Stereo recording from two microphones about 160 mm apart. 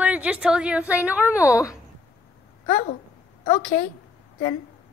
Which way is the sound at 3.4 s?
50° left (ahead or behind).